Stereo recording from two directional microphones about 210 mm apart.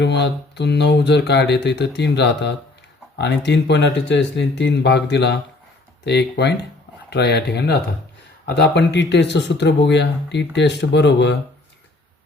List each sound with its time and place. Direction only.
0.0 s speech: 55° left (ahead or behind)